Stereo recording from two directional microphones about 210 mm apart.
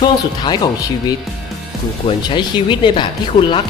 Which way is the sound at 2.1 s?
25° left (ahead or behind).